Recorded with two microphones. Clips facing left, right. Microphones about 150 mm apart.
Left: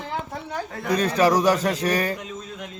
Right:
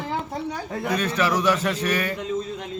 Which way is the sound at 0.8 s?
35° left (ahead or behind).